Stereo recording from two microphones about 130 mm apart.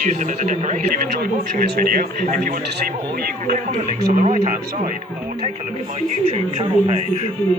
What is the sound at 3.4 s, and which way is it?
Speech, 75° right (ahead or behind).